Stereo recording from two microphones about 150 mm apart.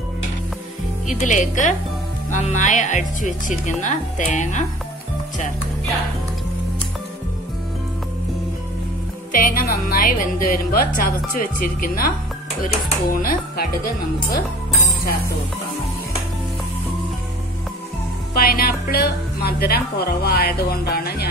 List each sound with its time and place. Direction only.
1.0 s speech: 55° left (ahead or behind)
9.3 s speech: 70° left (ahead or behind)
18.3 s a woman's voice: 85° left